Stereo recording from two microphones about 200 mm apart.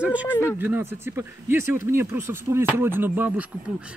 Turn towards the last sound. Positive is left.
turn(degrees=-10)  # may be behind; listen again after turning